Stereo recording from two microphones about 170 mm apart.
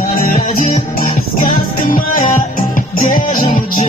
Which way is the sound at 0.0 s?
55° left (ahead or behind).